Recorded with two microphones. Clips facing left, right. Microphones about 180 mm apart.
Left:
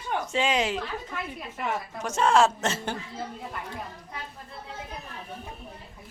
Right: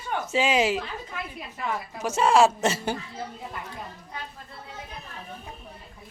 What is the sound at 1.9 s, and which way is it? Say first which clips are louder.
Speech: right 2 dB; 5° right (ahead or behind).